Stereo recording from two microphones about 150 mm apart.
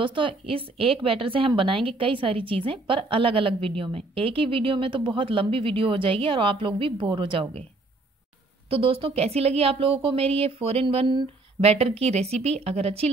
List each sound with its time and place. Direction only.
0.0 s a woman's voice: 35° right (ahead or behind)
8.6 s speech: 40° right (ahead or behind)